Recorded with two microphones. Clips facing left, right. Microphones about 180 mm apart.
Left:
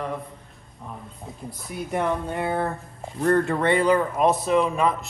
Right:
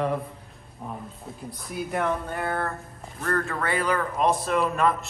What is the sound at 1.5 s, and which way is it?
Speech, centre (ahead or behind).